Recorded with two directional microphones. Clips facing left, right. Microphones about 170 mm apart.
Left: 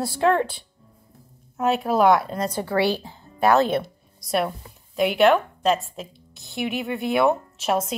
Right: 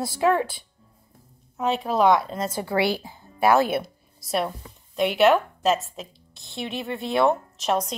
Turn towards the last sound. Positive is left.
turn(degrees=5)  # may be behind; listen again after turning